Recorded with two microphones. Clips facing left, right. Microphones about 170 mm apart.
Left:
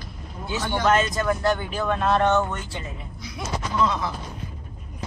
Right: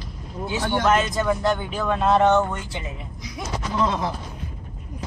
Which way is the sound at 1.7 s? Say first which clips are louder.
Right 2 dB; centre (ahead or behind).